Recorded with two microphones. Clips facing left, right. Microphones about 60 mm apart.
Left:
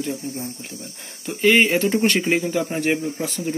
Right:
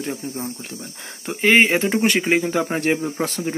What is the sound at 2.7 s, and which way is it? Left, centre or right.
Speech, right.